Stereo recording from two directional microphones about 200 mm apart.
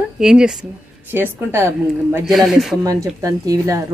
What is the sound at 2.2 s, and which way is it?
Speech, centre (ahead or behind).